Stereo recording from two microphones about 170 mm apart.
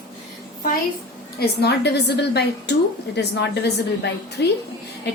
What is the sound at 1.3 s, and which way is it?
A woman's voice, 75° left (ahead or behind).